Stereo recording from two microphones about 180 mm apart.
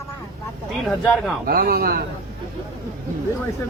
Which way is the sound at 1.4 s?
55° right (ahead or behind).